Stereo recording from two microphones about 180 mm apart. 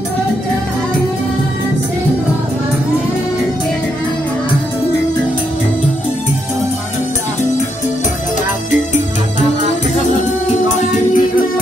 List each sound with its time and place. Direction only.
10.4 s music: 40° left (ahead or behind)